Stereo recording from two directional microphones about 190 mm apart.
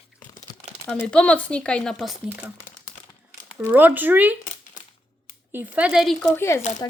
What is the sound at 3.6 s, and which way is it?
Speech, 10° right (ahead or behind).